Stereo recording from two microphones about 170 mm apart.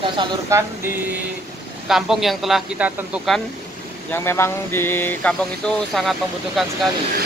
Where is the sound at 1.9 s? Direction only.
Centre (ahead or behind).